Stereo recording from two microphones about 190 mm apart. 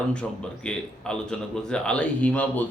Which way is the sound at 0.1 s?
5° left (ahead or behind).